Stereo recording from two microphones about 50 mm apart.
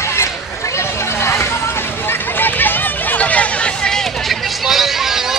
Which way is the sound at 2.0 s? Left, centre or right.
Left.